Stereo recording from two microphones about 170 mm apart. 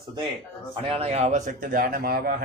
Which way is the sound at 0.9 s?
35° right (ahead or behind).